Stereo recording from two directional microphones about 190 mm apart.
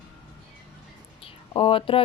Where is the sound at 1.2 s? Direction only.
30° left (ahead or behind).